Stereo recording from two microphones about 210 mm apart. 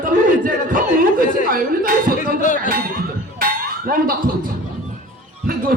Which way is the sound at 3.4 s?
45° right (ahead or behind).